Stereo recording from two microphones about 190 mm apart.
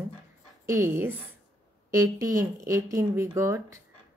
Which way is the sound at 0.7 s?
15° right (ahead or behind).